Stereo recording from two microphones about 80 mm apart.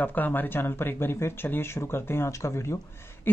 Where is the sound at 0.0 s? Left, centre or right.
Left.